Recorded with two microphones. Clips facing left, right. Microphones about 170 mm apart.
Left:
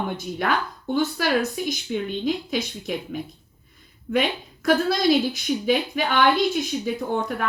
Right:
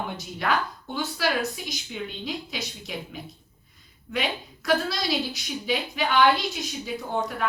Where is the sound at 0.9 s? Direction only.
50° left (ahead or behind).